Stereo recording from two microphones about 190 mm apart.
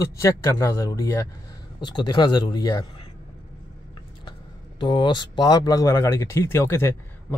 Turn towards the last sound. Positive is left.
turn(degrees=15)  # may be behind; listen again after turning